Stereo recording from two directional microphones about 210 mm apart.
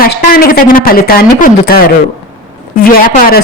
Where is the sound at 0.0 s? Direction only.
45° left (ahead or behind).